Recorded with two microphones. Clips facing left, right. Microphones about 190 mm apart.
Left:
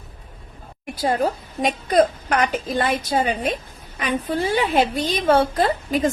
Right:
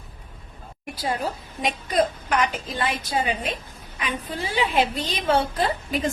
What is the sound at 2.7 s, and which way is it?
A woman's voice, 45° left (ahead or behind).